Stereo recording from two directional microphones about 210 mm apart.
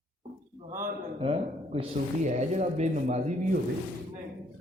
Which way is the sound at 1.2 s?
25° right (ahead or behind).